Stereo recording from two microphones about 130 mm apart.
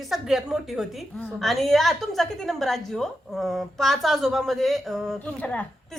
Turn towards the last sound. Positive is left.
turn(degrees=10)  # may be behind; listen again after turning